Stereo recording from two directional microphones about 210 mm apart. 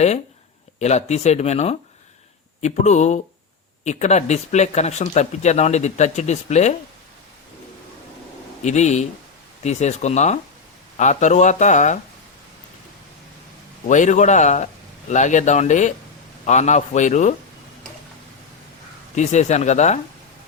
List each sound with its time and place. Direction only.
0.8 s speech: 30° left (ahead or behind)
8.6 s speech: 35° left (ahead or behind)
13.8 s speech: 35° left (ahead or behind)
19.1 s speech: 35° left (ahead or behind)